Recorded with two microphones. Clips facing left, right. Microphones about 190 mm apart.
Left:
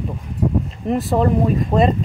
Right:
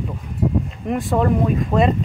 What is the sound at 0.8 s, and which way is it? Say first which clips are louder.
Speech: left 5 dB; centre (ahead or behind).